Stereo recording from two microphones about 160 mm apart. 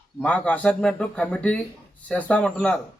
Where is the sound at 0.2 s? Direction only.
10° left (ahead or behind).